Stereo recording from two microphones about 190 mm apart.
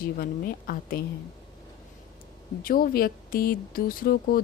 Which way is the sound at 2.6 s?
50° left (ahead or behind).